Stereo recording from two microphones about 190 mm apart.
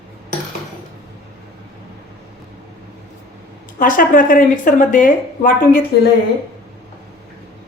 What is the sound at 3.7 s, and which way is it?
Speech, 45° left (ahead or behind).